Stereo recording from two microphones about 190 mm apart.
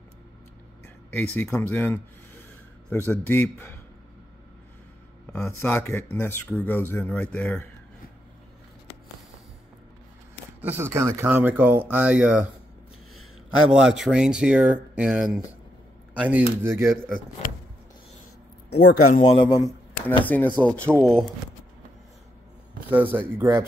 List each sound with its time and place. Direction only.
0.8 s speech: 10° left (ahead or behind)
5.4 s speech: 10° left (ahead or behind)
10.6 s speech: 10° right (ahead or behind)
13.7 s speech: 5° right (ahead or behind)
18.8 s speech: 55° left (ahead or behind)
19.2 s a man's voice: 20° left (ahead or behind)
20.2 s speech: 10° left (ahead or behind)
22.8 s speech: 10° right (ahead or behind)